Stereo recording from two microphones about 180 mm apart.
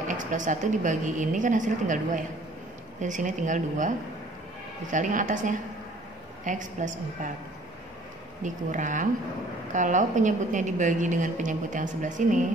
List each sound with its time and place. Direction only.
0.1 s a woman's voice: 45° right (ahead or behind)
4.9 s a woman's voice: 45° right (ahead or behind)
8.4 s a woman's voice: 45° right (ahead or behind)